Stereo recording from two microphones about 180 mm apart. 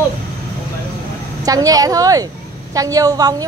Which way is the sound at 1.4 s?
20° right (ahead or behind).